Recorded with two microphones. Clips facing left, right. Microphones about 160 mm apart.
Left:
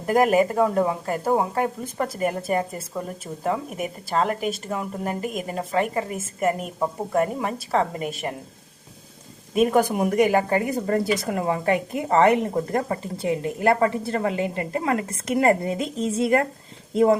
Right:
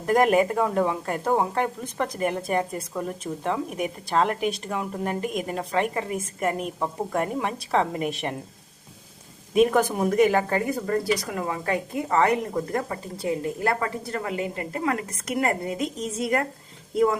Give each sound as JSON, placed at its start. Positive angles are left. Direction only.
{"t": 0.1, "sound": "a woman's voice", "side_deg": 5}
{"t": 9.6, "sound": "speech", "side_deg": 10}
{"t": 11.3, "sound": "a woman's voice", "side_deg": 35}
{"t": 13.7, "sound": "a woman's voice", "side_deg": 30}